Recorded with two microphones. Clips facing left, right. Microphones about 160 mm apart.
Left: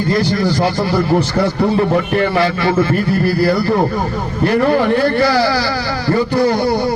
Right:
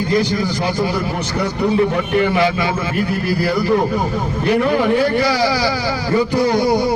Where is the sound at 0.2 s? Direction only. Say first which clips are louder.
Left 1 dB; 15° right (ahead or behind).